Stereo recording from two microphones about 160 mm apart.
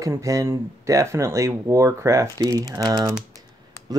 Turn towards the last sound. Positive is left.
turn(degrees=-25)  # may be behind; listen again after turning